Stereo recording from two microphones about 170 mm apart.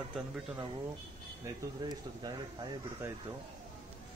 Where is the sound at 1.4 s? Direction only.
25° right (ahead or behind).